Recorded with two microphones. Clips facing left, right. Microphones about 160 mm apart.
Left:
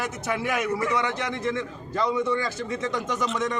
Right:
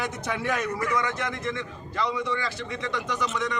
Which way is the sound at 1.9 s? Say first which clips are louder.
Left 4 dB; 45° left (ahead or behind).